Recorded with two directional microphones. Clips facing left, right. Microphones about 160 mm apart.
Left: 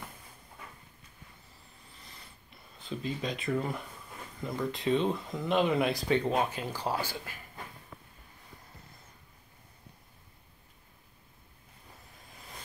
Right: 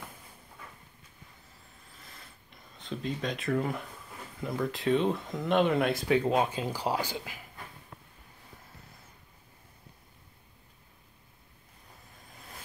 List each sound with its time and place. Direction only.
1.9 s a sound: centre (ahead or behind)
4.4 s speech: centre (ahead or behind)
6.3 s speech: 20° right (ahead or behind)